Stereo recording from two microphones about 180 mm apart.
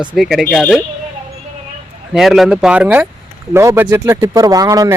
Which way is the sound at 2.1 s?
Centre (ahead or behind).